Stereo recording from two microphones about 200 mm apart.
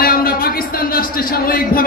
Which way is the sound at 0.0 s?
45° left (ahead or behind).